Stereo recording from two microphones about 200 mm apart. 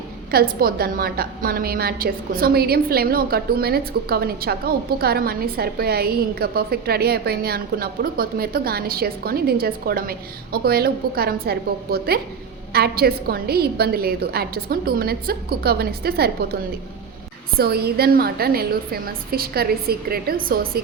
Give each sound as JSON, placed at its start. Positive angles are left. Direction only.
{"t": 0.3, "sound": "a woman's voice", "side_deg": -50}
{"t": 17.6, "sound": "a woman's voice", "side_deg": -50}